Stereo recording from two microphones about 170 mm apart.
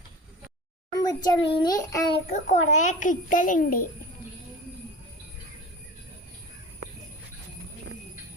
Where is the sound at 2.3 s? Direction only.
45° left (ahead or behind).